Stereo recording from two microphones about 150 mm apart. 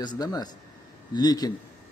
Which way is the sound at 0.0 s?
25° left (ahead or behind).